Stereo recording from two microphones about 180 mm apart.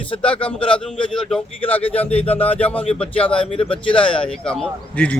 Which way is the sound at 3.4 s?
30° left (ahead or behind).